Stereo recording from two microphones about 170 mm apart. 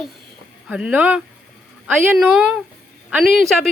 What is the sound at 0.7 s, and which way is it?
A woman's voice, 5° right (ahead or behind).